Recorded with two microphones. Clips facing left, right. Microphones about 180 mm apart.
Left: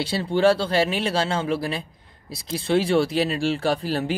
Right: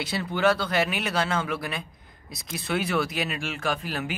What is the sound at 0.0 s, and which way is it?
Speech, 30° left (ahead or behind).